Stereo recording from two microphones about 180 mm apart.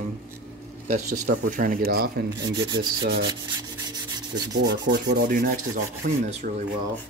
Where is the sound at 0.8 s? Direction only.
45° right (ahead or behind); by 2.5 s 60° right (ahead or behind).